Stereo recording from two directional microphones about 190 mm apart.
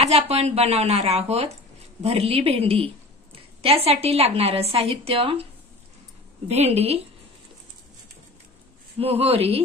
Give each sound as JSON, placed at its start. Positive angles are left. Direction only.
{"t": 0.0, "sound": "a woman's voice", "side_deg": -35}
{"t": 6.5, "sound": "a woman's voice", "side_deg": -35}
{"t": 8.9, "sound": "a woman's voice", "side_deg": -30}